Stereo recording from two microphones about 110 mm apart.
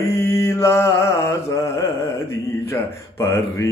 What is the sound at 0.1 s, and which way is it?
Mantra, 25° left (ahead or behind).